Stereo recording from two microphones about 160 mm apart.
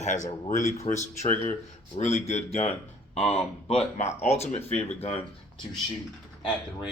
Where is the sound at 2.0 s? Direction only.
40° left (ahead or behind).